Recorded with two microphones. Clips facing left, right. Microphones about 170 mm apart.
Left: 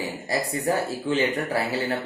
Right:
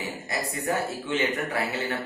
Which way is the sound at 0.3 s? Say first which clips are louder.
Left 4 dB; 35° left (ahead or behind).